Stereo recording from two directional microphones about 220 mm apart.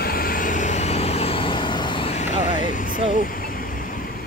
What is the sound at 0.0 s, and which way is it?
Vehicle, 40° left (ahead or behind).